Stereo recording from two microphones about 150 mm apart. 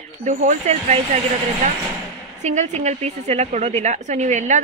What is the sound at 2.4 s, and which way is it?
Speech, 50° right (ahead or behind).